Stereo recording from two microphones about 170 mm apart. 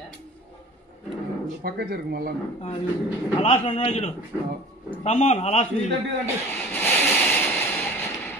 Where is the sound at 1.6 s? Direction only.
65° right (ahead or behind).